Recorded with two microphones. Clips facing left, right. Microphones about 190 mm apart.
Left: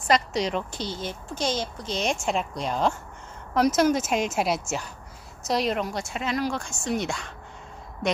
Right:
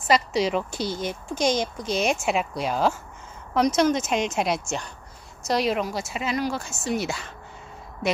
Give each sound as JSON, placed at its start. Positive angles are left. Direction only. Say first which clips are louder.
{"t": 0.1, "sound": "a woman's voice", "louder": "right 2 dB", "side_deg": -5}